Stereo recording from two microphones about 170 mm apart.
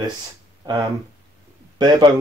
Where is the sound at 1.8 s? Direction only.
25° right (ahead or behind).